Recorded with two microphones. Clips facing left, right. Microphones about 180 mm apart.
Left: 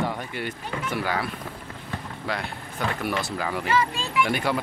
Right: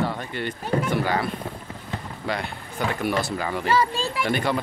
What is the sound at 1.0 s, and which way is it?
Speech, 5° left (ahead or behind).